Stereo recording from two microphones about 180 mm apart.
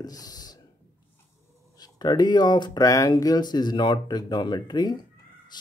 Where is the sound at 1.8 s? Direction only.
20° left (ahead or behind).